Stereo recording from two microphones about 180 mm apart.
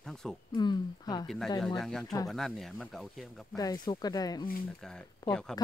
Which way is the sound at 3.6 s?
20° left (ahead or behind).